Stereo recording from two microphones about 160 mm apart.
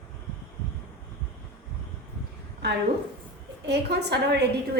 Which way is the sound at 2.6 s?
90° right.